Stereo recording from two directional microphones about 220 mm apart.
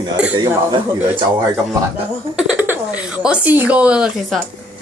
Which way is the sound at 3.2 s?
5° right (ahead or behind).